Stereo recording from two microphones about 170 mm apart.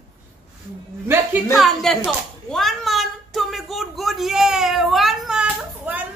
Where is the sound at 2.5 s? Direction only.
Centre (ahead or behind).